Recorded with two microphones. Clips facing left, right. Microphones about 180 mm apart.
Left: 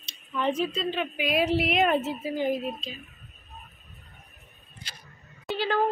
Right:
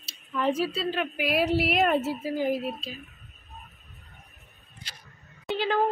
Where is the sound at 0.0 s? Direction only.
Centre (ahead or behind).